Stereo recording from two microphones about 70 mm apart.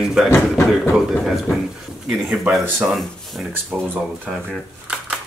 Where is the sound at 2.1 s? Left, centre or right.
Centre.